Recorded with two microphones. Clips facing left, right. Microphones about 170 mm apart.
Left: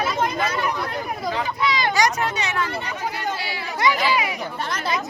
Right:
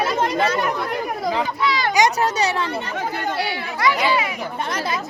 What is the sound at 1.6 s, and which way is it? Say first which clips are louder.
Speech: left 1 dB; 20° left (ahead or behind).